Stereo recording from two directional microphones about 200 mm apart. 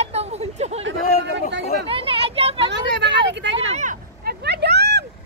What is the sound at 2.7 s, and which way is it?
Vehicle, 60° right (ahead or behind).